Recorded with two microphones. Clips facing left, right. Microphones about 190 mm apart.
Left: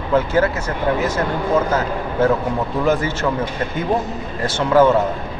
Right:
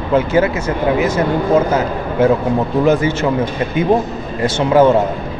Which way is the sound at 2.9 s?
20° right (ahead or behind).